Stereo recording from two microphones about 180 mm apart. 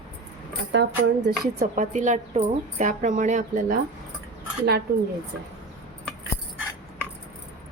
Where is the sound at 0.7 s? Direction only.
75° right (ahead or behind).